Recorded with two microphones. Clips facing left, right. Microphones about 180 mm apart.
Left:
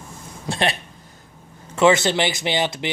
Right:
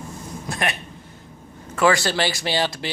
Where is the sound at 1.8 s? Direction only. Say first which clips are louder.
Left 3 dB; 20° left (ahead or behind).